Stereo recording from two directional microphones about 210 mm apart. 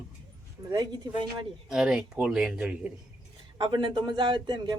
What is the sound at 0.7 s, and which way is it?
Speech, 20° right (ahead or behind).